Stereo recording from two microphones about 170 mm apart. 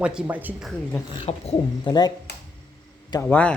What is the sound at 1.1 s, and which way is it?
Speech, 30° left (ahead or behind).